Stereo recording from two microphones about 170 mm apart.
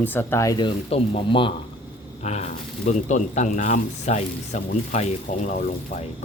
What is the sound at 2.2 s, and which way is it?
Speech, 40° left (ahead or behind).